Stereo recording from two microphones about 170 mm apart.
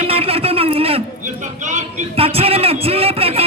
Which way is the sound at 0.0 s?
35° right (ahead or behind).